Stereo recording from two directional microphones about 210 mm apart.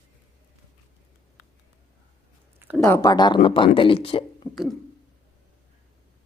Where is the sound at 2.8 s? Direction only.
15° left (ahead or behind).